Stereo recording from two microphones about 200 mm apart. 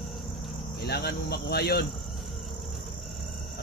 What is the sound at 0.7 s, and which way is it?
Speech, 50° left (ahead or behind).